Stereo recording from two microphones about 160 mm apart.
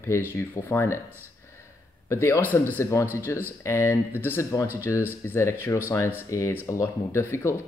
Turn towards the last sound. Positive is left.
turn(degrees=15)  # may be behind; listen again after turning